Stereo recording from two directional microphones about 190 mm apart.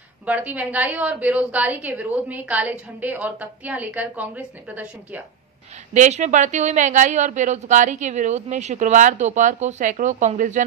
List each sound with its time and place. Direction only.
0.2 s a woman's voice: 10° right (ahead or behind)
5.9 s speech: 40° right (ahead or behind)